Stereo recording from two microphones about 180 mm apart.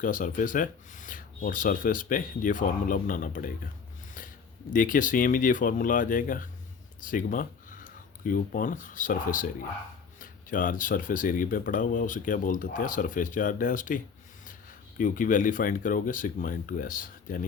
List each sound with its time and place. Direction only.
0.0 s speech: 50° left (ahead or behind)
4.7 s speech: 50° left (ahead or behind)